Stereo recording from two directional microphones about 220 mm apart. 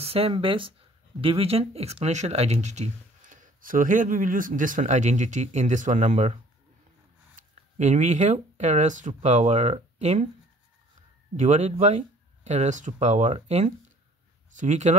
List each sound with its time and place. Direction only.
0.0 s speech: 25° right (ahead or behind)
7.3 s speech: 30° right (ahead or behind)
11.3 s speech: 30° right (ahead or behind)